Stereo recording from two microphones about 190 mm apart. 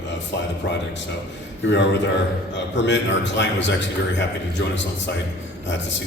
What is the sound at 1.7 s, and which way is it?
A man's voice, 70° left (ahead or behind).